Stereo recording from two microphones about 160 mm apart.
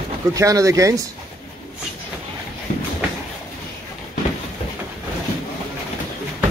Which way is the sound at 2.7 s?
55° left (ahead or behind).